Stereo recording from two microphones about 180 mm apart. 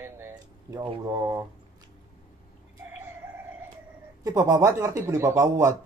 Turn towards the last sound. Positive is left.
turn(degrees=-15)  # may be behind; listen again after turning